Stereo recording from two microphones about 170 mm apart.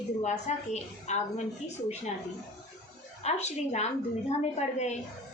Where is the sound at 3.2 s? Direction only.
40° left (ahead or behind).